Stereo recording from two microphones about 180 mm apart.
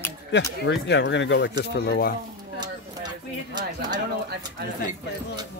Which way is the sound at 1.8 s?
60° left (ahead or behind).